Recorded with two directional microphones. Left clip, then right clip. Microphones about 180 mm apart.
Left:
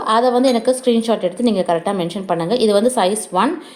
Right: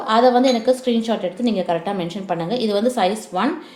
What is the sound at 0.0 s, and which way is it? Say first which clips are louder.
A woman's voice: even; 35° left (ahead or behind).